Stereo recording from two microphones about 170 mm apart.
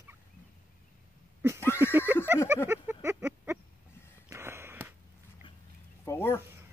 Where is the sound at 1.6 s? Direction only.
15° left (ahead or behind).